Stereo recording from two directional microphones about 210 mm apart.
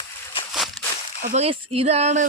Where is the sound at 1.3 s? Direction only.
30° right (ahead or behind).